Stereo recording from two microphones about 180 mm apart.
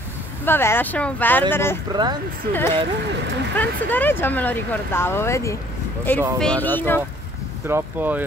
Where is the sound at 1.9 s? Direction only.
25° right (ahead or behind).